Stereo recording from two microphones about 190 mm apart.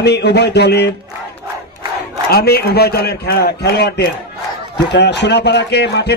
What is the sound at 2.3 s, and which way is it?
Speech, 55° left (ahead or behind).